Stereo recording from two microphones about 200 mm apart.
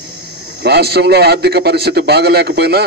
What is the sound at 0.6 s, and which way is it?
A man's voice, 55° right (ahead or behind).